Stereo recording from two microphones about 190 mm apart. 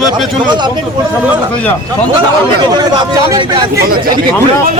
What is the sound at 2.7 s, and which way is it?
Speech, 20° right (ahead or behind).